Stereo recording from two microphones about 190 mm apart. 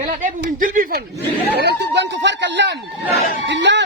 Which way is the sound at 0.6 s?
45° right (ahead or behind).